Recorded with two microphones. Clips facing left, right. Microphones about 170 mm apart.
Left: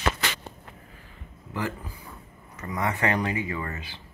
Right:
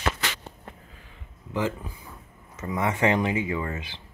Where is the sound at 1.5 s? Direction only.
20° right (ahead or behind).